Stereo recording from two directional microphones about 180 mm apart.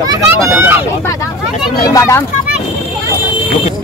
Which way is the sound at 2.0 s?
15° left (ahead or behind).